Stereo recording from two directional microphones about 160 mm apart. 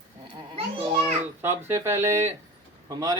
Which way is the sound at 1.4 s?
15° right (ahead or behind).